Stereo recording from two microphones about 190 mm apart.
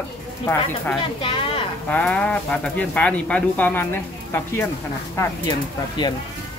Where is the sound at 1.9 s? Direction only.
5° left (ahead or behind).